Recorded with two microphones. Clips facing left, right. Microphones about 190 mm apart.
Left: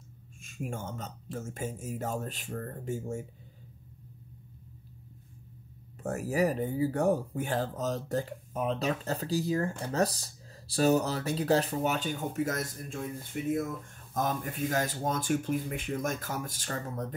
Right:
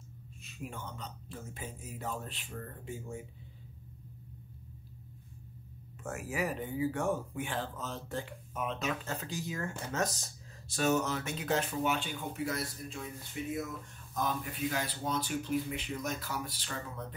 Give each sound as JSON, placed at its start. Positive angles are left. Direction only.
{"t": 0.4, "sound": "speech", "side_deg": 45}
{"t": 6.0, "sound": "speech", "side_deg": 40}